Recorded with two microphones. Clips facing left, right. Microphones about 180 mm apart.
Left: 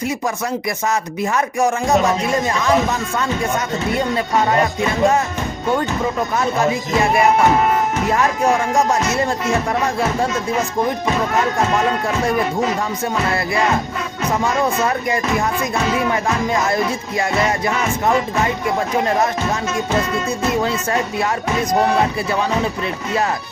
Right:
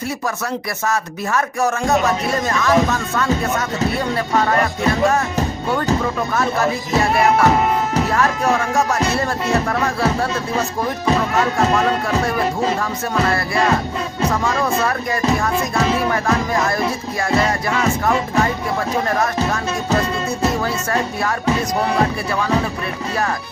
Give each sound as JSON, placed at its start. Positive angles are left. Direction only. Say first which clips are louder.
{"t": 0.9, "sound": "music", "louder": "even", "side_deg": 20}
{"t": 6.3, "sound": "speech", "louder": "even", "side_deg": 20}
{"t": 8.1, "sound": "music", "louder": "left 3 dB", "side_deg": 15}
{"t": 9.8, "sound": "speech", "louder": "even", "side_deg": 20}
{"t": 14.4, "sound": "speech", "louder": "left 1 dB", "side_deg": 20}